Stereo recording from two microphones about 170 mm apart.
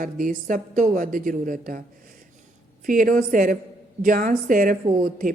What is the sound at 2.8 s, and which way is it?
Speech, 55° right (ahead or behind).